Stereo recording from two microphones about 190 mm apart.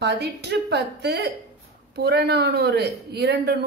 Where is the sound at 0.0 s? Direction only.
65° right (ahead or behind).